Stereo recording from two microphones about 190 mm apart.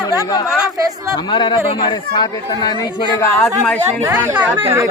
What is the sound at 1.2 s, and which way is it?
Speech, 25° left (ahead or behind).